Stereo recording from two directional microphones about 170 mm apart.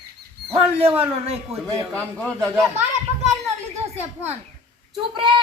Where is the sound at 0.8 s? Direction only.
35° right (ahead or behind).